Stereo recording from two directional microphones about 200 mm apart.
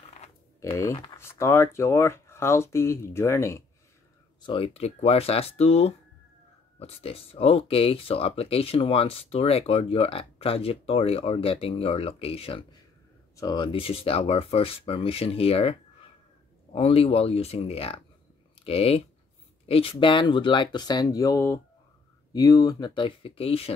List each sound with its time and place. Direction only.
0.6 s speech: 15° left (ahead or behind)
4.4 s speech: 25° left (ahead or behind)